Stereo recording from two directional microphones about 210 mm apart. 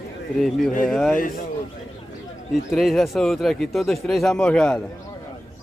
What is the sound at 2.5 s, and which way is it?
Speech, centre (ahead or behind).